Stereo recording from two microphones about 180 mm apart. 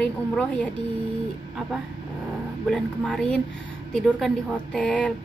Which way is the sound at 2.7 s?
5° left (ahead or behind).